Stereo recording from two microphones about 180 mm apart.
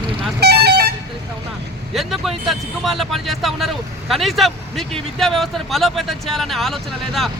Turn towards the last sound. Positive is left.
turn(degrees=0)  # may be behind; listen again after turning